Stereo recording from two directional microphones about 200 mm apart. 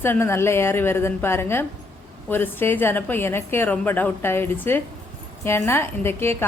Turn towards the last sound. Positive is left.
turn(degrees=10)  # may be behind; listen again after turning